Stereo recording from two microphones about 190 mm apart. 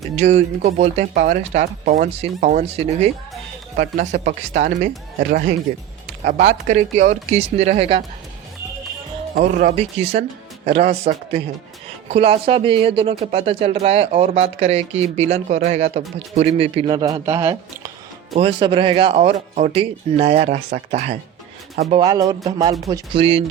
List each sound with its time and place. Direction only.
0.2 s speech: 35° right (ahead or behind)
3.8 s speech: 45° right (ahead or behind)
6.2 s speech: 40° right (ahead or behind)
9.3 s speech: 40° right (ahead or behind)
12.1 s speech: 30° right (ahead or behind)
16.9 s speech: 20° right (ahead or behind)
18.3 s speech: 30° right (ahead or behind)
22.0 s speech: 20° right (ahead or behind)
23.1 s speech: 30° right (ahead or behind)